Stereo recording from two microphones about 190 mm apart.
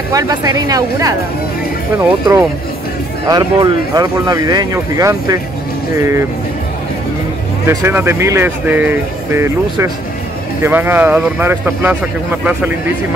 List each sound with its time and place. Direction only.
0.1 s speech: 20° right (ahead or behind)
7.6 s speech: 15° right (ahead or behind)